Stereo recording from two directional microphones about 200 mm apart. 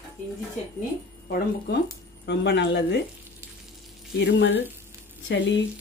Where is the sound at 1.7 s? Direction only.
60° left (ahead or behind).